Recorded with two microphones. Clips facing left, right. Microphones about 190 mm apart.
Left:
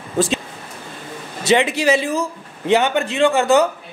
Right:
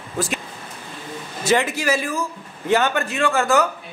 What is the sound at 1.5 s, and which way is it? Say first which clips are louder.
Speech: left 4 dB; 20° left (ahead or behind).